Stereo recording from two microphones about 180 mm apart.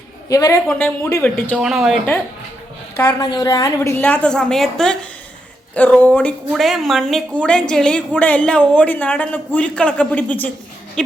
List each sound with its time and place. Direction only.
0.3 s a woman's voice: 20° left (ahead or behind)
1.5 s speech: 5° right (ahead or behind)
3.0 s a woman's voice: 20° left (ahead or behind)
11.0 s a sound: 5° left (ahead or behind)